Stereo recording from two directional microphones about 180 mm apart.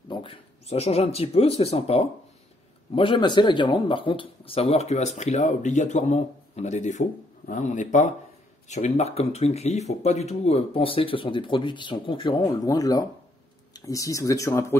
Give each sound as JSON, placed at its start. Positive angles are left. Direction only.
{"t": 0.1, "sound": "speech", "side_deg": 30}